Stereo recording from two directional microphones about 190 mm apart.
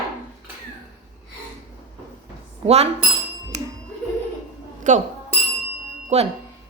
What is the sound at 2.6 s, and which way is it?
Speech, 35° right (ahead or behind).